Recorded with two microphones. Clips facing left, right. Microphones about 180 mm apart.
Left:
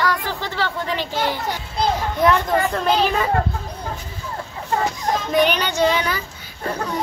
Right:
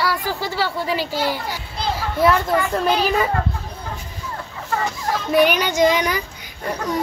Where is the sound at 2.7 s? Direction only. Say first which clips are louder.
Even; 5° right (ahead or behind).